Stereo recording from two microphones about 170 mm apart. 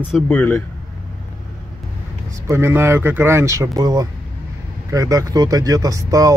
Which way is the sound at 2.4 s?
15° right (ahead or behind).